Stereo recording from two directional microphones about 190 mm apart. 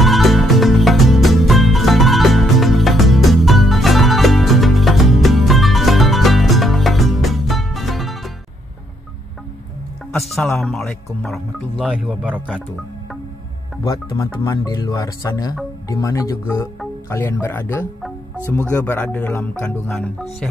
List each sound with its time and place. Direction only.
0.0 s music: centre (ahead or behind)
10.1 s music: centre (ahead or behind)
10.6 s speech: centre (ahead or behind)
14.4 s speech: 20° left (ahead or behind)